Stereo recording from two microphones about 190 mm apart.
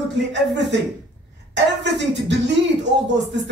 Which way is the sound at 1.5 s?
65° right (ahead or behind).